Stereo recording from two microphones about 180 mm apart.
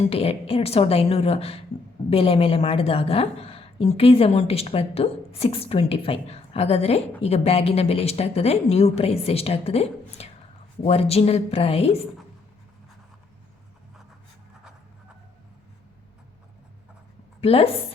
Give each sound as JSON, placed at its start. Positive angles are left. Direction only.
{"t": 0.1, "sound": "a woman's voice", "side_deg": 35}
{"t": 17.4, "sound": "a woman's voice", "side_deg": 35}